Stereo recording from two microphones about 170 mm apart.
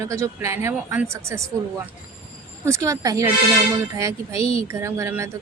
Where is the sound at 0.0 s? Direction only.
15° right (ahead or behind).